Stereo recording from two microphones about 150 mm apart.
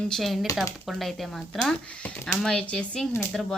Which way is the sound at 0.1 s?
Centre (ahead or behind).